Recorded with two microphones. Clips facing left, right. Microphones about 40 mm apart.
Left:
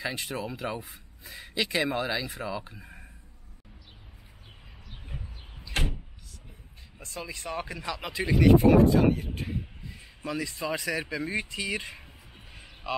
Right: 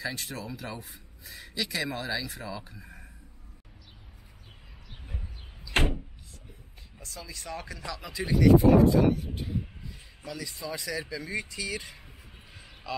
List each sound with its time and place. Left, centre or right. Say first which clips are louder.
0.0 s speech: left 3 dB; left
5.7 s door: right 5 dB; right
7.0 s speech: left 5 dB; left
10.2 s a man's voice: left 6 dB; left